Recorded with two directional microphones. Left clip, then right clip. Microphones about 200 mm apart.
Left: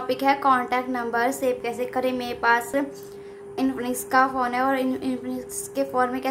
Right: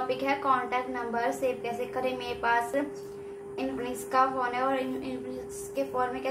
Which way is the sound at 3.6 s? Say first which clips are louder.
Left 7 dB; 55° left (ahead or behind).